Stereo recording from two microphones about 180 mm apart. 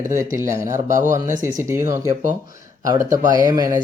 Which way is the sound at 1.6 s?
15° right (ahead or behind).